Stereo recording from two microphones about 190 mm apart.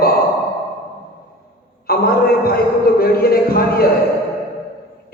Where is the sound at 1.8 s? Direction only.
55° left (ahead or behind).